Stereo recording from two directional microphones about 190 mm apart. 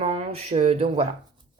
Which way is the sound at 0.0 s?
35° right (ahead or behind).